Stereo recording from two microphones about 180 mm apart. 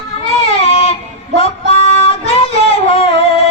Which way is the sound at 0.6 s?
35° left (ahead or behind).